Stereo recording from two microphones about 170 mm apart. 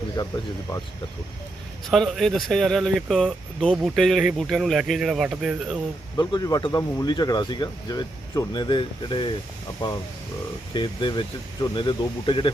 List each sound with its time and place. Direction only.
0.2 s speech: 25° left (ahead or behind)
1.9 s speech: centre (ahead or behind)
6.1 s speech: 20° left (ahead or behind)